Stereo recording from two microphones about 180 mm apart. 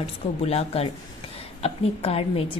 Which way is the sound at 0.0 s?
35° left (ahead or behind).